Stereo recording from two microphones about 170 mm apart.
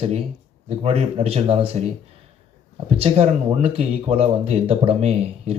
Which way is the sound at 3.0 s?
35° right (ahead or behind).